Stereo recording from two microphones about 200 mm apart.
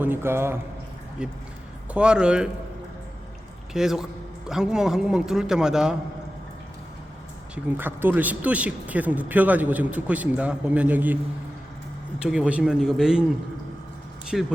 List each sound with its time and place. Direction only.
0.0 s a man's voice: 10° right (ahead or behind)
3.7 s a man's voice: 5° right (ahead or behind)
7.5 s speech: 10° right (ahead or behind)
12.2 s a man's voice: 5° right (ahead or behind)
14.3 s a man's voice: centre (ahead or behind)